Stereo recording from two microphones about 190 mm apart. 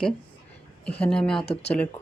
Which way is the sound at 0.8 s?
5° left (ahead or behind).